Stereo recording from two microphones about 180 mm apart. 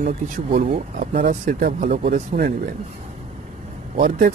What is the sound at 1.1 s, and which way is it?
Speech, 50° right (ahead or behind).